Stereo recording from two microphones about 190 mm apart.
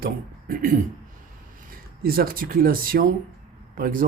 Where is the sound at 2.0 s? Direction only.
50° right (ahead or behind).